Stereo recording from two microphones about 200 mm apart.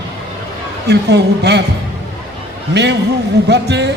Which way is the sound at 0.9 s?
55° right (ahead or behind).